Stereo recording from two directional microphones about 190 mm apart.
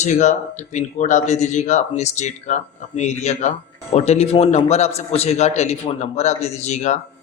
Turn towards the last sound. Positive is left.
turn(degrees=35)  # may be behind; listen again after turning